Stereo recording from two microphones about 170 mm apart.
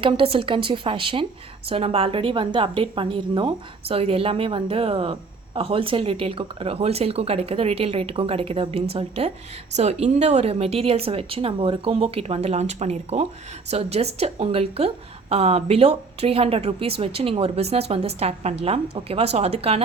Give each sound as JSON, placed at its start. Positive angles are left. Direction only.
{"t": 0.0, "sound": "a woman's voice", "side_deg": -30}